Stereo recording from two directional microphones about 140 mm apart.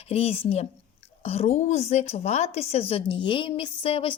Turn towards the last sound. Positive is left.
turn(degrees=40)  # may be behind; listen again after turning